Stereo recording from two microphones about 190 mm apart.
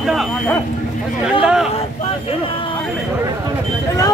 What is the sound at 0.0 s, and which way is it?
Speech, centre (ahead or behind).